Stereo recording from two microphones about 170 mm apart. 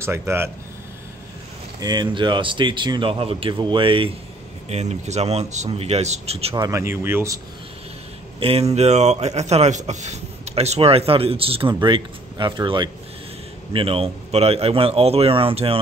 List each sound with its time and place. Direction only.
0.0 s speech: 15° right (ahead or behind)
1.8 s a man's voice: 25° right (ahead or behind)
6.5 s speech: 20° right (ahead or behind)
8.4 s a man's voice: 35° right (ahead or behind)